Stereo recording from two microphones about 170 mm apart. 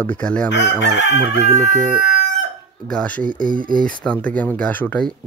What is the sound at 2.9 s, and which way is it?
Speech, 5° left (ahead or behind).